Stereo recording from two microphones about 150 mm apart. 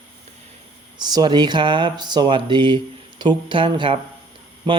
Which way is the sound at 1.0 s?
30° right (ahead or behind).